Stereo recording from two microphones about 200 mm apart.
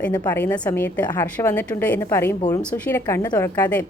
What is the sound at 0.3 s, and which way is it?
A woman's voice, 10° left (ahead or behind).